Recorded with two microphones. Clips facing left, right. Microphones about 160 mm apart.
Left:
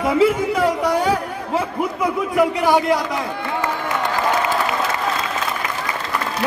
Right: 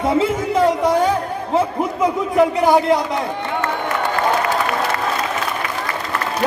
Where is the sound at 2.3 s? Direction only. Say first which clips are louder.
Right 2 dB; 25° right (ahead or behind).